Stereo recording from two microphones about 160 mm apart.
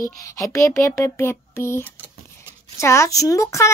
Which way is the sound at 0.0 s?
20° left (ahead or behind).